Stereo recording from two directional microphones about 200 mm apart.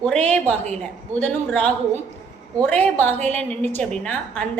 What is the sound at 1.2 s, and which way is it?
A woman's voice, 5° left (ahead or behind).